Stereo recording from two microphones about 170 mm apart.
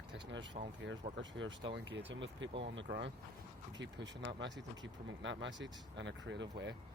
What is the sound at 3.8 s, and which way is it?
Speech, 90° right.